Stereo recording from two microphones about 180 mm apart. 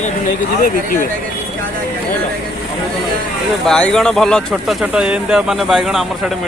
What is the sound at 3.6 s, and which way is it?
Speech, 5° left (ahead or behind).